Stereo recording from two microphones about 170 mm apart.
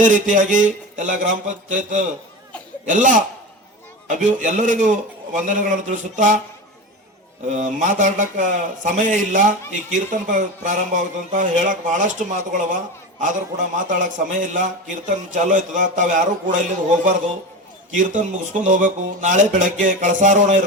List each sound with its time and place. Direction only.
0.0 s a man's voice: 50° right (ahead or behind)
7.5 s a man's voice: 50° right (ahead or behind)
17.9 s a man's voice: 50° right (ahead or behind)